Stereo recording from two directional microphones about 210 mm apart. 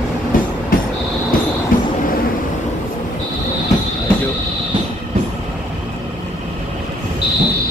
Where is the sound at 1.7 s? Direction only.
40° left (ahead or behind).